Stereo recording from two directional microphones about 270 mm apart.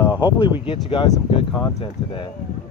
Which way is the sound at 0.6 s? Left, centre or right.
Centre.